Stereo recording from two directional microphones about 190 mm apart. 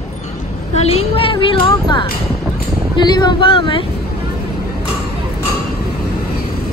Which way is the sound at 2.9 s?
25° left (ahead or behind).